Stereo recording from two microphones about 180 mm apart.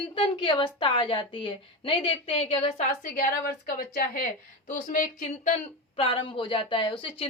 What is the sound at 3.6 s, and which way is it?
Speech, 55° left (ahead or behind).